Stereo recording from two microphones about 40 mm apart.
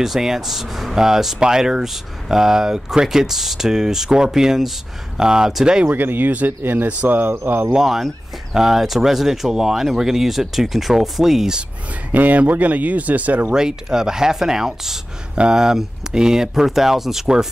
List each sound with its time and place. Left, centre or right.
0.0 s speech: centre
5.9 s speech: right
7.8 s speech: centre
12.1 s speech: right
13.5 s speech: centre